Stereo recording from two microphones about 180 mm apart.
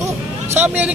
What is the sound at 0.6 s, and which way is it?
Speech, 10° right (ahead or behind).